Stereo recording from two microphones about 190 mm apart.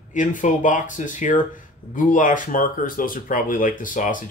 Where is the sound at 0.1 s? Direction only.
45° left (ahead or behind).